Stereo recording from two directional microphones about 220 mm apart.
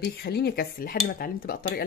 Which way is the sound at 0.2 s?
45° left (ahead or behind).